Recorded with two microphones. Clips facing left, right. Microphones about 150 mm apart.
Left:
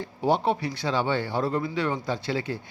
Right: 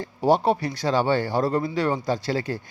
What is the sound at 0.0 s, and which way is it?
A man's voice, 40° right (ahead or behind).